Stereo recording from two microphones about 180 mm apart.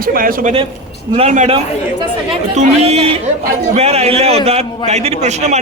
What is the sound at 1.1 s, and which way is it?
A man's voice, 40° right (ahead or behind).